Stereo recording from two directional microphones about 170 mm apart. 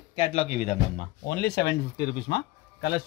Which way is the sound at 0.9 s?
70° left (ahead or behind).